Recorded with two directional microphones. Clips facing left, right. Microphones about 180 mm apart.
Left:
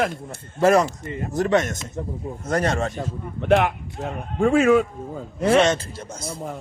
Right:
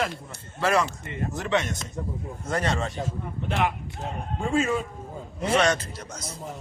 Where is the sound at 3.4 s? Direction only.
65° left (ahead or behind).